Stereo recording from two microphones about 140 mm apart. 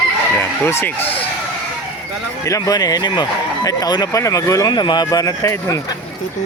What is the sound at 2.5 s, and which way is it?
Speech, 25° left (ahead or behind).